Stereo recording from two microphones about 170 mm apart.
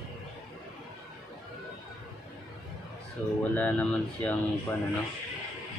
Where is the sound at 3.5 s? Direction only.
10° left (ahead or behind).